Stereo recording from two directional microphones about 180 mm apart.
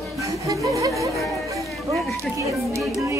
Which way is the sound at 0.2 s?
15° right (ahead or behind).